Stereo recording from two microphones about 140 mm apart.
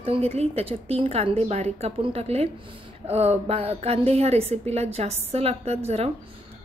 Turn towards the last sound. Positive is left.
turn(degrees=-50)  # may be behind; listen again after turning